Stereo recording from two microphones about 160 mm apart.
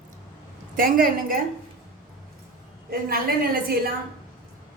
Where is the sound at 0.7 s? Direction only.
60° right (ahead or behind).